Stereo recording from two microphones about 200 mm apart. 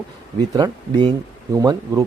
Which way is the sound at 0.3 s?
20° right (ahead or behind).